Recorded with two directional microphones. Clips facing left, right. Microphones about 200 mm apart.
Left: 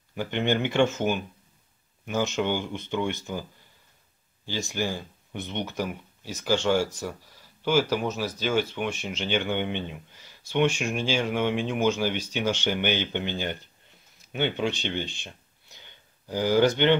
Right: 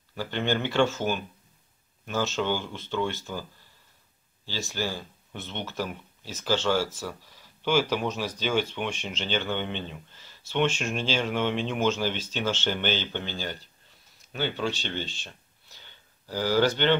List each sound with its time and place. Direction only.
0.1 s speech: 15° left (ahead or behind)
4.5 s speech: 15° left (ahead or behind)